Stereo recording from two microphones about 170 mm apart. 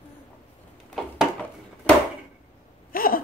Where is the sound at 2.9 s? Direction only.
60° left (ahead or behind).